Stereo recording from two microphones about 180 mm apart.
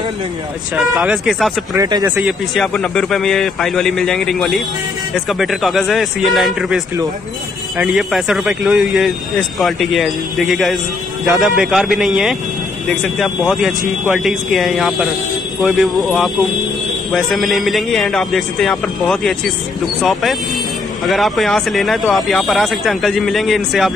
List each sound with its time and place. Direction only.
0.9 s speech: centre (ahead or behind)
1.8 s speech: 20° right (ahead or behind)
2.1 s speech: centre (ahead or behind)